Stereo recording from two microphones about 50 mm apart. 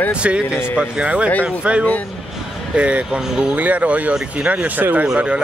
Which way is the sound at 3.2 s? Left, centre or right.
Centre.